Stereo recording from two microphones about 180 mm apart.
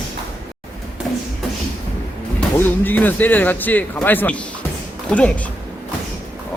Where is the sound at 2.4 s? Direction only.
10° left (ahead or behind).